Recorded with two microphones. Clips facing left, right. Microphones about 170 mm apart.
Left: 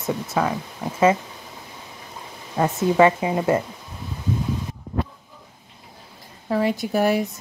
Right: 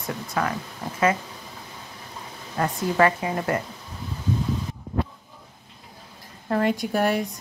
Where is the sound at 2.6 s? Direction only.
20° left (ahead or behind).